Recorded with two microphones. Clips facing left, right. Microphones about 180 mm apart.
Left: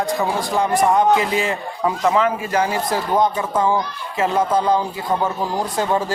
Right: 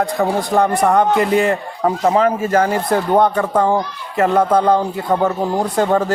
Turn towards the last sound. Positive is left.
turn(degrees=-60)  # may be behind; listen again after turning